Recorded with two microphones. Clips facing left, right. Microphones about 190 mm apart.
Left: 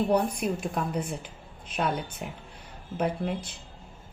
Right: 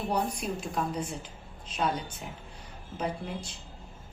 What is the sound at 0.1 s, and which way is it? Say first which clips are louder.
Speech: left 5 dB; 55° left (ahead or behind).